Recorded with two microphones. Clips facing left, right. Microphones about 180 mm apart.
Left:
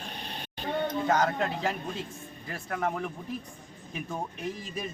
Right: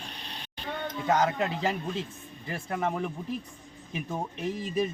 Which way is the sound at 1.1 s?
5° right (ahead or behind).